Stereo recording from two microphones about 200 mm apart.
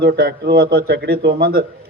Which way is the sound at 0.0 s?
55° right (ahead or behind).